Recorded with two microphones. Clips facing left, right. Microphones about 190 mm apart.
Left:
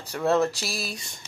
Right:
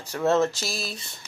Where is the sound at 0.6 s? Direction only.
10° left (ahead or behind).